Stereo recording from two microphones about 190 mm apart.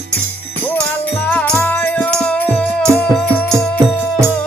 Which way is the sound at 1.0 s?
10° left (ahead or behind).